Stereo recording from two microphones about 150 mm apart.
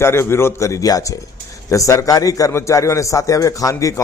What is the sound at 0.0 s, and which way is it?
A man's voice, 15° left (ahead or behind).